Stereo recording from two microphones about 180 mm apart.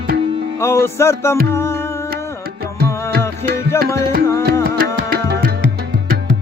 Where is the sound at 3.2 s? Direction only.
15° left (ahead or behind).